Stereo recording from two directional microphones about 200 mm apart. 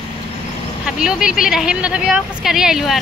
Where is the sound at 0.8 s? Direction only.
5° right (ahead or behind).